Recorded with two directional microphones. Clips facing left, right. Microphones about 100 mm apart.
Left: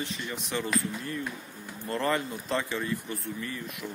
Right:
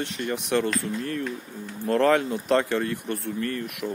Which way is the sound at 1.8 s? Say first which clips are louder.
Right 8 dB; 70° right (ahead or behind).